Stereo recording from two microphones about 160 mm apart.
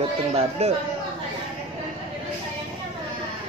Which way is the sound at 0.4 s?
40° right (ahead or behind).